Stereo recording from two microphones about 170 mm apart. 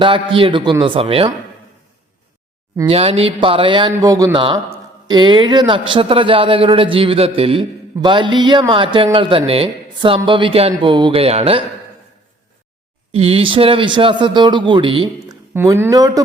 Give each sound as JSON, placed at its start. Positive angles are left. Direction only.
{"t": 0.0, "sound": "a man's voice", "side_deg": -30}
{"t": 2.8, "sound": "a man's voice", "side_deg": -35}
{"t": 13.1, "sound": "a man's voice", "side_deg": -35}
{"t": 15.5, "sound": "a man's voice", "side_deg": -15}